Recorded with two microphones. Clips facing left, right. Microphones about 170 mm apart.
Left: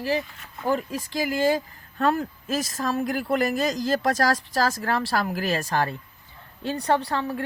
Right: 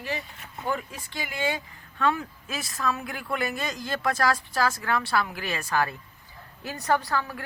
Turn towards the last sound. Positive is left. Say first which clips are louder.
# left 2 dB
turn(degrees=30)  # may be behind; listen again after turning